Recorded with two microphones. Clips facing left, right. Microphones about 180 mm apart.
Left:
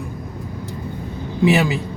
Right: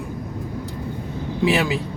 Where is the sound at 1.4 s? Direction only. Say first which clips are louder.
Left 3 dB; centre (ahead or behind).